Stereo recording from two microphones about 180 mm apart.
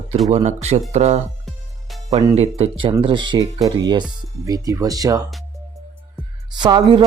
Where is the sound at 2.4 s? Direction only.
35° right (ahead or behind).